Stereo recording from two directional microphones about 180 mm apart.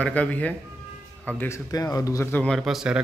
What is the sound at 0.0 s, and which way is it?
Speech, 10° left (ahead or behind).